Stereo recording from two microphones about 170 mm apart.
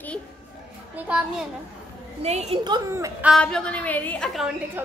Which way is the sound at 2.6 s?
20° right (ahead or behind).